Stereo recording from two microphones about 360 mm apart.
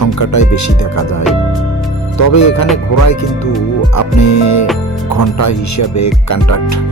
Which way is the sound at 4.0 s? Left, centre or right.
Left.